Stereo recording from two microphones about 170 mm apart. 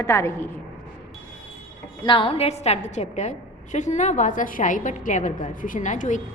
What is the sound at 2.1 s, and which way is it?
A woman's voice, 30° left (ahead or behind).